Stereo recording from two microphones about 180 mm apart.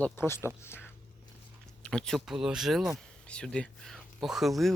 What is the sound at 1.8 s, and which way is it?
Speech, 5° left (ahead or behind).